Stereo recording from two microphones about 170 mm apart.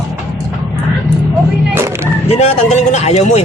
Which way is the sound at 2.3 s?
40° left (ahead or behind).